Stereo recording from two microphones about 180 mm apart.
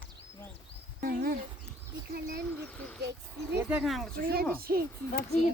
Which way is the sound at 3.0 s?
70° right (ahead or behind).